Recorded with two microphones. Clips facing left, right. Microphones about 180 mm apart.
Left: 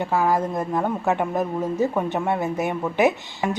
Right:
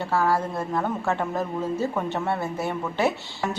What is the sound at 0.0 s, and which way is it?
A man's voice, 15° left (ahead or behind).